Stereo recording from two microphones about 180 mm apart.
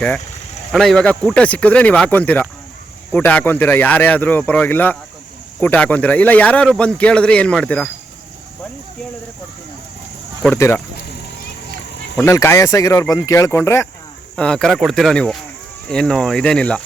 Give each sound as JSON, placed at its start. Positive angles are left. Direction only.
{"t": 0.7, "sound": "speech", "side_deg": 5}
{"t": 10.4, "sound": "speech", "side_deg": 10}
{"t": 12.2, "sound": "speech", "side_deg": 15}
{"t": 14.3, "sound": "speech", "side_deg": 5}